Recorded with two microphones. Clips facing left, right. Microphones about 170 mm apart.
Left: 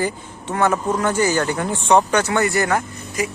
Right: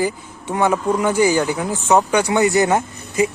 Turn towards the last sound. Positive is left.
turn(degrees=-20)  # may be behind; listen again after turning